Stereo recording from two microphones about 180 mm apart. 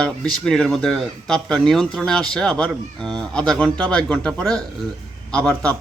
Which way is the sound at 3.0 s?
25° right (ahead or behind).